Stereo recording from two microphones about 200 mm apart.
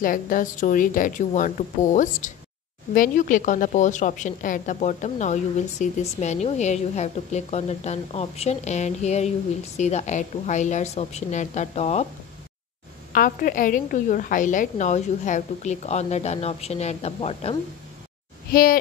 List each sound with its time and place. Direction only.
0.0 s a woman's voice: 45° left (ahead or behind)
13.1 s a woman's voice: 45° left (ahead or behind)
18.5 s speech: 45° left (ahead or behind)